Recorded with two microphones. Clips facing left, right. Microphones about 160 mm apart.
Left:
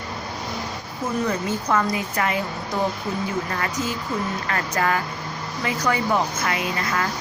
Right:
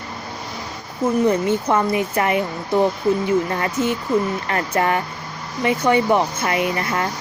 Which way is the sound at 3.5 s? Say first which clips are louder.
Right 5 dB; 25° right (ahead or behind).